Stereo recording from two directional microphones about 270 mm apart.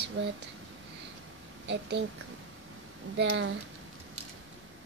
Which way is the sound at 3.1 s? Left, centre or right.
Right.